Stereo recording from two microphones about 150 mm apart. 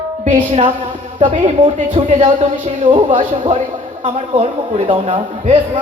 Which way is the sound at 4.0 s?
35° right (ahead or behind).